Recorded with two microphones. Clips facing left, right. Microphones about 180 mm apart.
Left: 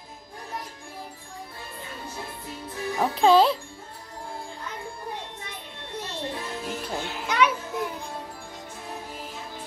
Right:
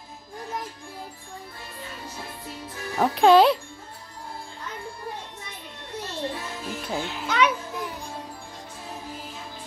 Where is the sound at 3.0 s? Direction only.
Centre (ahead or behind).